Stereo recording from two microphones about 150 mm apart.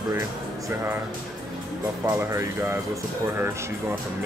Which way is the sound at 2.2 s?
15° right (ahead or behind).